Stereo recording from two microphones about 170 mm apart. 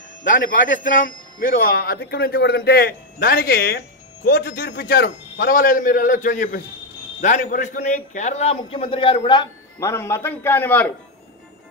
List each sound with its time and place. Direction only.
0.2 s a man's voice: 55° left (ahead or behind); by 10.9 s 10° left (ahead or behind)